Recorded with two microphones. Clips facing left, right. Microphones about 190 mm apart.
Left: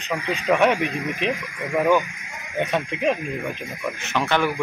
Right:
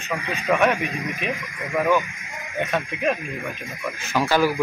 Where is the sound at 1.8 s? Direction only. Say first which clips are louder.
Left 2 dB; 15° left (ahead or behind).